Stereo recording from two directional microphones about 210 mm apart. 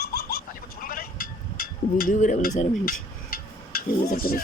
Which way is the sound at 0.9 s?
45° left (ahead or behind).